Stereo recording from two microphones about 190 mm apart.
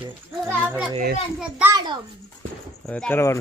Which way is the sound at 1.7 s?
20° right (ahead or behind).